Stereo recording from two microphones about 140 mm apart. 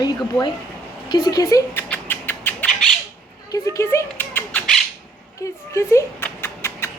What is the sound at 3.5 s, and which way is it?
Rodents, 25° left (ahead or behind).